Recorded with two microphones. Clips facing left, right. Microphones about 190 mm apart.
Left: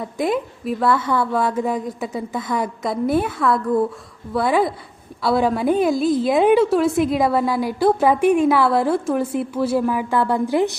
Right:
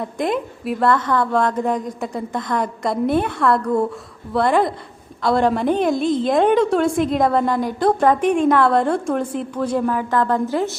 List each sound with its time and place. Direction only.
0.0 s a woman's voice: centre (ahead or behind)